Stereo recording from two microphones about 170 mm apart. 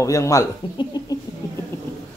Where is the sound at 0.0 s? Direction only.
20° left (ahead or behind).